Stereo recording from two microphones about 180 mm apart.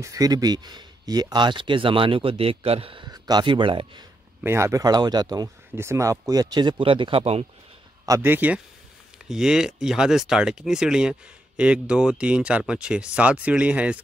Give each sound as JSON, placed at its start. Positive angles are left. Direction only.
{"t": 0.0, "sound": "speech", "side_deg": -20}
{"t": 4.4, "sound": "speech", "side_deg": -15}
{"t": 8.0, "sound": "speech", "side_deg": -15}